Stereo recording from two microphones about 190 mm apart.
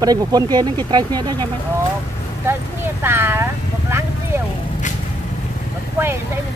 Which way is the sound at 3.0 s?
10° right (ahead or behind).